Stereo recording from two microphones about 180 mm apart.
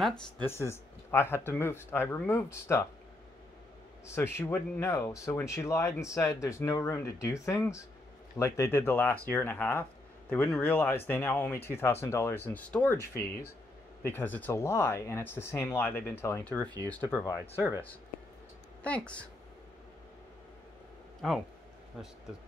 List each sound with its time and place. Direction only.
0.4 s speech: 15° left (ahead or behind)
4.0 s speech: 15° left (ahead or behind)
18.8 s a woman's voice: 5° left (ahead or behind)
21.2 s speech: centre (ahead or behind)